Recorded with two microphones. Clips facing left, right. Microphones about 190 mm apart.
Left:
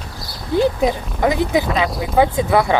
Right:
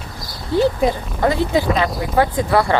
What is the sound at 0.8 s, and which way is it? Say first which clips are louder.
Speech: even; 10° left (ahead or behind).